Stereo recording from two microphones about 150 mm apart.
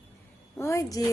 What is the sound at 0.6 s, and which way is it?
Speech, 20° left (ahead or behind).